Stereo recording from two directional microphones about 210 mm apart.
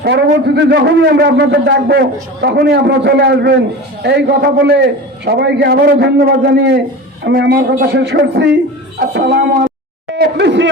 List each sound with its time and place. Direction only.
0.0 s a man's voice: 55° right (ahead or behind)
10.2 s speech: 55° right (ahead or behind)